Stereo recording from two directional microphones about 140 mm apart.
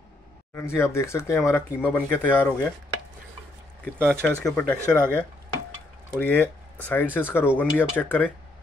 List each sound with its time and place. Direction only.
0.6 s speech: 20° left (ahead or behind)
3.8 s speech: 5° left (ahead or behind)
4.7 s speech: 20° right (ahead or behind)
6.1 s speech: 15° left (ahead or behind)